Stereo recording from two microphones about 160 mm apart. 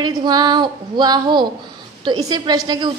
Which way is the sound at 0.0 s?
25° right (ahead or behind).